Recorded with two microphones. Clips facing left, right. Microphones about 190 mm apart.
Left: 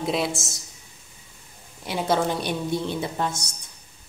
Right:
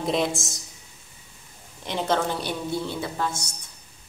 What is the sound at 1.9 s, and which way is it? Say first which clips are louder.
A woman's voice: left 1 dB; 10° left (ahead or behind).